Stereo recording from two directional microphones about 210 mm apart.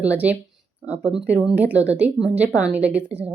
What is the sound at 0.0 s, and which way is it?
A woman's voice, 5° right (ahead or behind).